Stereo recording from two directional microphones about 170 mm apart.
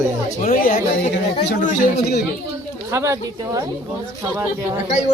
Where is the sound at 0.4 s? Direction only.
55° left (ahead or behind).